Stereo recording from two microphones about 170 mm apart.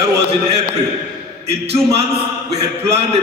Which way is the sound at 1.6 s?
35° right (ahead or behind).